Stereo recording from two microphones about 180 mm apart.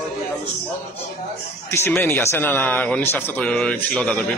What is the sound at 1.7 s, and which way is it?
A man's voice, 10° left (ahead or behind).